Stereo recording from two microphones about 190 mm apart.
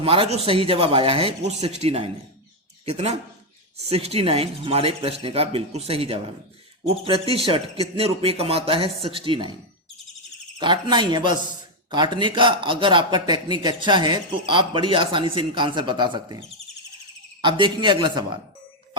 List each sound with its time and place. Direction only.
0.0 s a man's voice: 30° right (ahead or behind)
10.6 s a man's voice: 25° right (ahead or behind)
17.4 s a man's voice: 25° right (ahead or behind)